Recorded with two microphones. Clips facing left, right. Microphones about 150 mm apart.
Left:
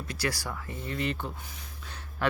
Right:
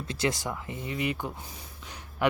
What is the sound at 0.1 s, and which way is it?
Speech, 20° right (ahead or behind).